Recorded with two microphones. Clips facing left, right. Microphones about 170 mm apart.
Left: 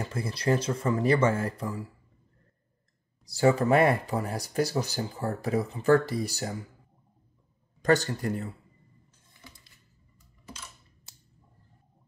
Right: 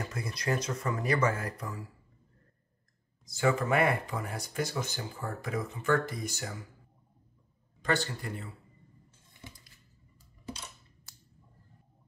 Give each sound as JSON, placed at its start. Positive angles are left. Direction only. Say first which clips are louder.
{"t": 0.0, "sound": "speech", "louder": "left 5 dB", "side_deg": 30}
{"t": 3.3, "sound": "speech", "louder": "left 6 dB", "side_deg": 35}
{"t": 7.8, "sound": "speech", "louder": "left 7 dB", "side_deg": 40}
{"t": 11.1, "sound": "scissors", "louder": "left 1 dB", "side_deg": 25}